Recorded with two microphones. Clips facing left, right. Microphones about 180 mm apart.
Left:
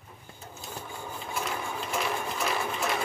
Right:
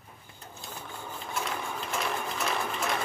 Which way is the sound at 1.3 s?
Centre (ahead or behind).